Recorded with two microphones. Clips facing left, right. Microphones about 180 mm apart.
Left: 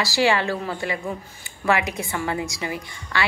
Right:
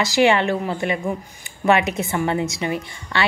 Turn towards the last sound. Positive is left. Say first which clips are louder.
# right 3 dB
turn(degrees=-25)  # may be behind; listen again after turning